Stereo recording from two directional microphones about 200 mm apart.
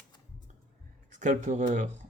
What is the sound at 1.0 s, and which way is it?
Speech, 40° right (ahead or behind).